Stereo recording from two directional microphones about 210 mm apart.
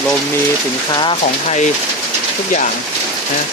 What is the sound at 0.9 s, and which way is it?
Speech, 25° left (ahead or behind).